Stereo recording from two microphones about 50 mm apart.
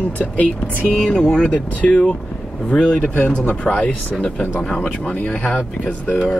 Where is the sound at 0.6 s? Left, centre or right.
Right.